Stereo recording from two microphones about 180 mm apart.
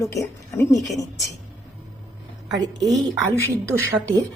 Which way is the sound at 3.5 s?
15° right (ahead or behind).